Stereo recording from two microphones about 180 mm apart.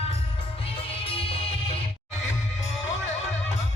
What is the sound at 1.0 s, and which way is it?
Music, 30° left (ahead or behind).